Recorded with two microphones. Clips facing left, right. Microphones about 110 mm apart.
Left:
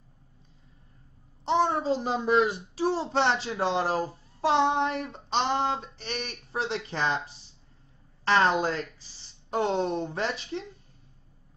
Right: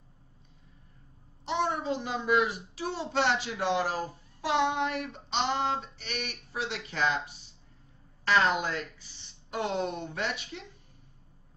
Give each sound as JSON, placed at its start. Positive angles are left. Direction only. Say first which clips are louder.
{"t": 1.4, "sound": "a child's voice", "louder": "left 5 dB", "side_deg": 35}